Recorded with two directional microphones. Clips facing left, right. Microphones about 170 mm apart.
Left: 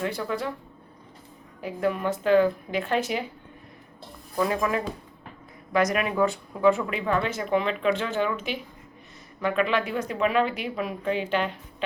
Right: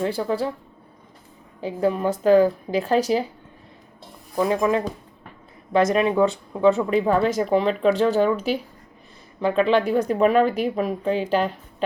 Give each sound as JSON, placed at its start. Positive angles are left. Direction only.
{"t": 0.0, "sound": "speech", "side_deg": -30}
{"t": 1.6, "sound": "speech", "side_deg": -35}
{"t": 4.4, "sound": "speech", "side_deg": -25}
{"t": 6.9, "sound": "speech", "side_deg": -35}